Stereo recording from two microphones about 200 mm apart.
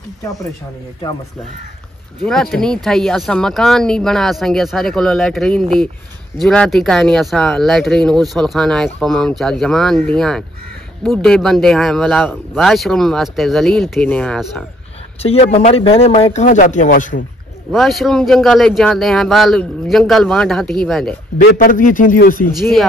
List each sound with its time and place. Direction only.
2.2 s speech: centre (ahead or behind)
15.2 s speech: 30° left (ahead or behind)
17.6 s speech: centre (ahead or behind)
21.5 s a man's voice: 40° left (ahead or behind)
22.6 s speech: centre (ahead or behind)